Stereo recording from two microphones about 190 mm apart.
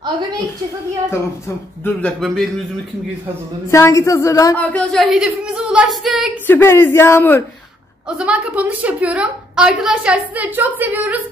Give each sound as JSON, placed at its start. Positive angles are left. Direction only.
{"t": 1.9, "sound": "speech", "side_deg": 5}
{"t": 3.7, "sound": "speech", "side_deg": 15}
{"t": 4.7, "sound": "speech", "side_deg": 0}
{"t": 6.4, "sound": "speech", "side_deg": 10}
{"t": 8.2, "sound": "a woman's voice", "side_deg": -5}